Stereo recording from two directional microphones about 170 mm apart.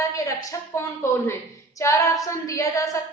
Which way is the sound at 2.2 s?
20° left (ahead or behind).